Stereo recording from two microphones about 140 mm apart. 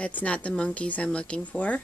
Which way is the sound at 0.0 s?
10° left (ahead or behind).